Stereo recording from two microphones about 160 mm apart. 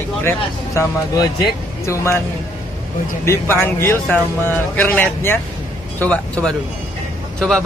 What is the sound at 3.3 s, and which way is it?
A man's voice, 15° left (ahead or behind).